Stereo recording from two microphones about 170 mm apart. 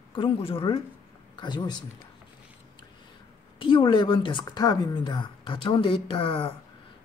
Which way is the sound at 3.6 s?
30° left (ahead or behind).